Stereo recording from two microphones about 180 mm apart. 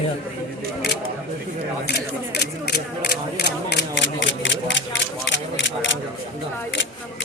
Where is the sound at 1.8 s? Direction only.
65° left (ahead or behind); by 5.9 s 90° left.